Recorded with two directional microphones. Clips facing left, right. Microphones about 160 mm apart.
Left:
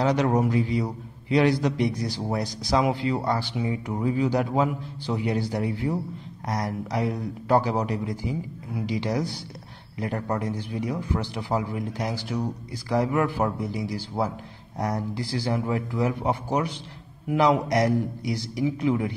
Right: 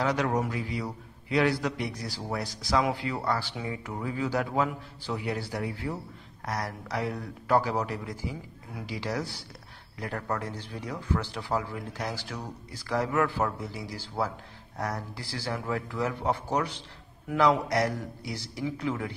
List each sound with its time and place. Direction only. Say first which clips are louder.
0.0 s a man's voice: left 5 dB; 20° left (ahead or behind)